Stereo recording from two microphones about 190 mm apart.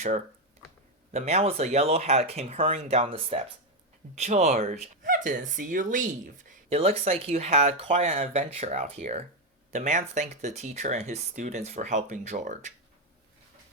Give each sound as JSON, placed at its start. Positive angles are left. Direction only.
{"t": 1.1, "sound": "speech", "side_deg": -35}
{"t": 6.7, "sound": "speech", "side_deg": -30}